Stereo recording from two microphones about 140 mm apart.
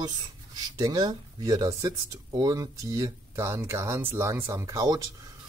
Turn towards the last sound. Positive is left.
turn(degrees=-25)  # may be behind; listen again after turning